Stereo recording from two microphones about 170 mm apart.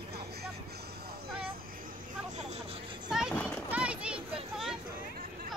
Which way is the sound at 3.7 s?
5° right (ahead or behind).